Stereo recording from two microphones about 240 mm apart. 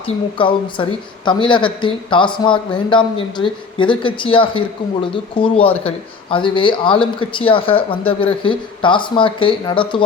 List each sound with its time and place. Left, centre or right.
0.3 s speech: left